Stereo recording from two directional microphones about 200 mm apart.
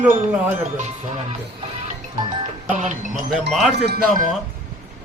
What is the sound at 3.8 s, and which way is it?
Speech, 50° right (ahead or behind).